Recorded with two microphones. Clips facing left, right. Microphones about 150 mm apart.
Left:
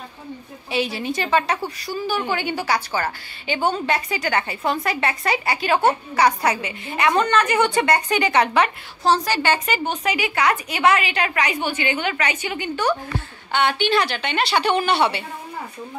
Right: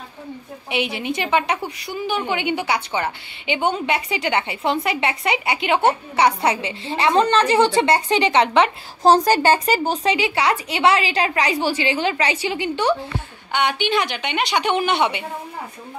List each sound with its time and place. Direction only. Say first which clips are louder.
0.7 s a woman's voice: even; 20° right (ahead or behind)
9.0 s a woman's voice: right 5 dB; 40° right (ahead or behind); by 12.9 s 25° right (ahead or behind)
13.5 s a woman's voice: left 1 dB; 15° right (ahead or behind)